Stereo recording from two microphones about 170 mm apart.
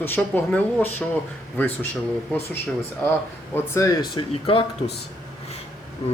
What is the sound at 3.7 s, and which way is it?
Speech, 20° left (ahead or behind).